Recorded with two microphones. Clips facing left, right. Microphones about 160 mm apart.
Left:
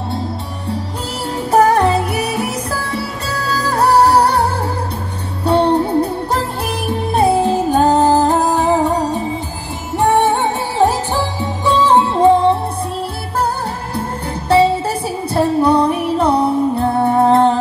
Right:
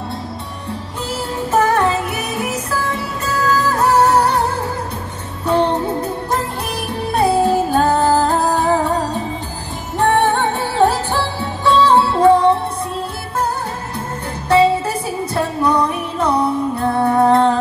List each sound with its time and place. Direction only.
1.5 s music: 35° left (ahead or behind)
3.3 s music: 35° left (ahead or behind)
5.4 s music: 35° left (ahead or behind)
7.1 s music: 20° left (ahead or behind)
15.3 s music: 30° left (ahead or behind)